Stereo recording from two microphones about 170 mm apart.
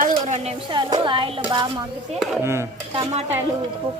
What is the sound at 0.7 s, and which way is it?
Speech, 25° right (ahead or behind).